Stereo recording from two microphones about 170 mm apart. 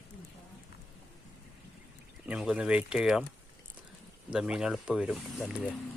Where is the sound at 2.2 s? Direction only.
5° right (ahead or behind).